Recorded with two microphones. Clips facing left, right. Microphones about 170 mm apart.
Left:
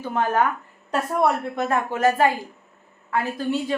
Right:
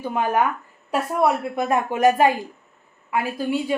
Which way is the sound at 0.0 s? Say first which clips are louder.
Even; 15° right (ahead or behind).